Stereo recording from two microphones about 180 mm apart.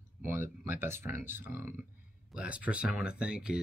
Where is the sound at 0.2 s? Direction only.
15° right (ahead or behind).